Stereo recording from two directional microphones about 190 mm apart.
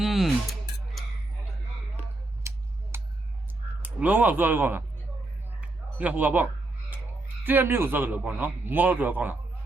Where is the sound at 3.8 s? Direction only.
10° right (ahead or behind).